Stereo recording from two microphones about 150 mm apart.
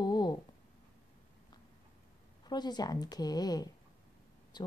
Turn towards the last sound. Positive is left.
turn(degrees=30)  # may be behind; listen again after turning